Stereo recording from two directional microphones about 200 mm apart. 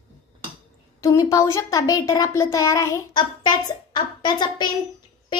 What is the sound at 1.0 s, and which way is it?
A child's voice, 15° left (ahead or behind).